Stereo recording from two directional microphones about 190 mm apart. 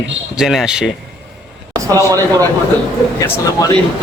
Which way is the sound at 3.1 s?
15° left (ahead or behind).